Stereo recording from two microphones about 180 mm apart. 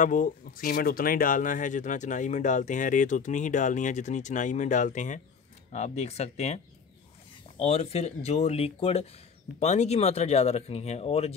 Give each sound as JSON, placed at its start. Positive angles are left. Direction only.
{"t": 0.0, "sound": "speech", "side_deg": 50}